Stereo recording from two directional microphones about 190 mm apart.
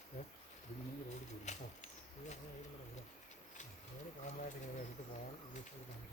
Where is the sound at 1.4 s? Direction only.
35° left (ahead or behind).